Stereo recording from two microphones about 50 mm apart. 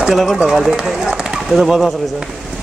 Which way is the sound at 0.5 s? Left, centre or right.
Centre.